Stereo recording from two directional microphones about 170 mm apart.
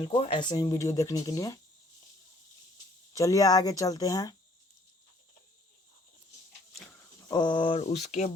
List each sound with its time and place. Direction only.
0.0 s speech: 30° left (ahead or behind)
3.1 s speech: 20° left (ahead or behind)
7.3 s speech: 25° left (ahead or behind); by 8.3 s 45° left (ahead or behind)